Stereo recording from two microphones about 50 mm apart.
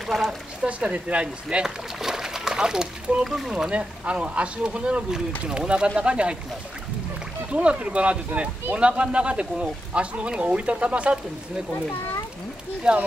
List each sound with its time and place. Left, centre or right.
0.0 s speech: centre
0.7 s speech: right
2.0 s splash: centre
3.3 s speech: centre
3.7 s speech: right
7.5 s speech: right
11.7 s speech: left
12.9 s speech: centre